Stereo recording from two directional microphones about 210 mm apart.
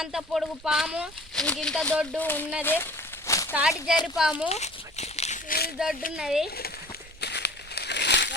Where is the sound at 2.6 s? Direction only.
10° left (ahead or behind).